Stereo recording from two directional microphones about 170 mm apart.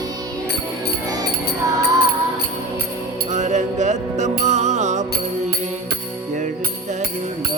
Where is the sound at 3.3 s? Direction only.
45° right (ahead or behind).